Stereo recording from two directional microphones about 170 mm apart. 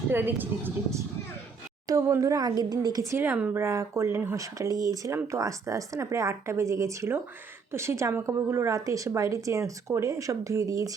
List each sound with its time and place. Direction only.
0.1 s a woman's voice: 10° right (ahead or behind)